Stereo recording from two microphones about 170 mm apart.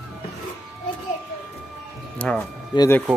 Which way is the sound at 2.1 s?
5° left (ahead or behind).